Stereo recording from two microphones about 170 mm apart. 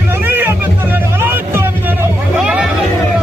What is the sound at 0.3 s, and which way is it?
Music, 10° right (ahead or behind).